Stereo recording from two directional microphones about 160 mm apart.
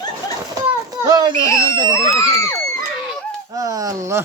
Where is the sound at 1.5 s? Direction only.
20° left (ahead or behind).